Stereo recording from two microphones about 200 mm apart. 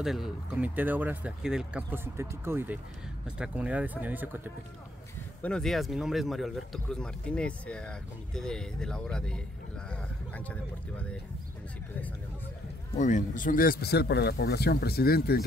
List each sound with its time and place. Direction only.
0.0 s speech: centre (ahead or behind)
5.4 s a man's voice: 5° left (ahead or behind)
13.0 s speech: 40° left (ahead or behind)